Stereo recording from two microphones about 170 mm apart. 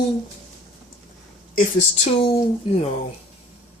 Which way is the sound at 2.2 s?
35° left (ahead or behind).